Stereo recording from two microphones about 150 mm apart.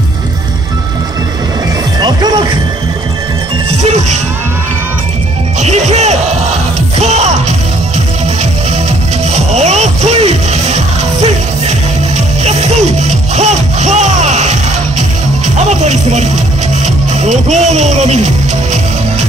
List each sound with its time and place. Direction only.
2.0 s music: 30° right (ahead or behind)
5.6 s music: 50° right (ahead or behind)
9.3 s music: 45° right (ahead or behind)